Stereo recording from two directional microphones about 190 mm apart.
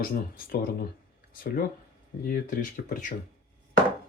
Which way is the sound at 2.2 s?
50° left (ahead or behind).